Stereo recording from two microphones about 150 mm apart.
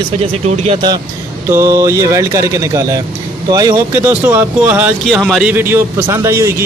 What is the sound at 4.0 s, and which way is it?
Speech, 15° right (ahead or behind).